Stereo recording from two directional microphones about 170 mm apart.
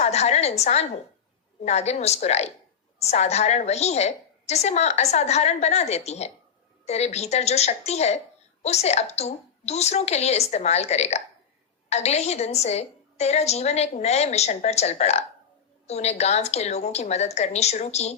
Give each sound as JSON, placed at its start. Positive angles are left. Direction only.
{"t": 0.0, "sound": "a woman's voice", "side_deg": 40}